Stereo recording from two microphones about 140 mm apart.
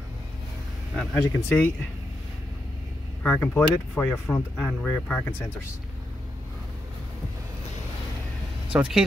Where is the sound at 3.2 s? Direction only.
10° left (ahead or behind).